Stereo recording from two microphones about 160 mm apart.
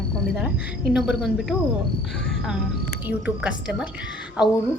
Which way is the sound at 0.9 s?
5° right (ahead or behind).